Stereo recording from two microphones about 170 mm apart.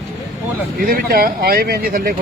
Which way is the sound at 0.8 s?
60° right (ahead or behind).